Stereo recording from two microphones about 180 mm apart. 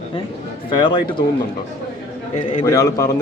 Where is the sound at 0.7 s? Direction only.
25° left (ahead or behind).